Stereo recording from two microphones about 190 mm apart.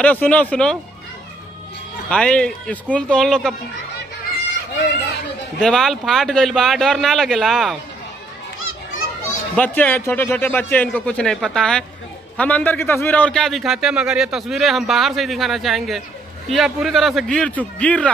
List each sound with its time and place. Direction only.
0.0 s speech: 5° left (ahead or behind)
2.0 s a man's voice: 5° left (ahead or behind)
5.6 s a man's voice: 5° left (ahead or behind)
8.5 s children playing: 90° left
9.2 s a man's voice: 10° left (ahead or behind)